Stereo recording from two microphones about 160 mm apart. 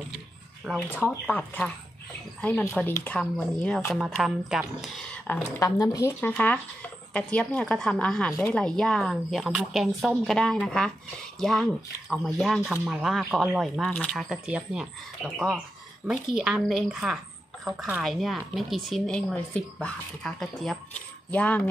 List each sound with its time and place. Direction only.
0.7 s speech: 15° left (ahead or behind)
5.6 s speech: 20° left (ahead or behind)
6.3 s speech: 10° left (ahead or behind)